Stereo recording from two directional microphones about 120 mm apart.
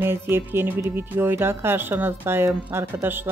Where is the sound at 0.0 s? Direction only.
20° right (ahead or behind).